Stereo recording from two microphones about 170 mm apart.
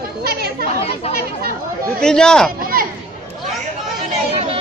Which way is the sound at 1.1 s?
60° right (ahead or behind).